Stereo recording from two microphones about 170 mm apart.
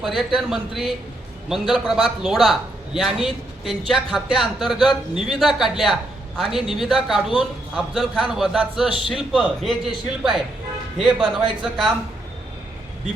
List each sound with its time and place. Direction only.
0.0 s a man's voice: 5° right (ahead or behind)
11.0 s a man's voice: 30° right (ahead or behind)